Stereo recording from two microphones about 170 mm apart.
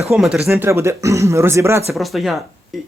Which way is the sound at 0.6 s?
15° right (ahead or behind).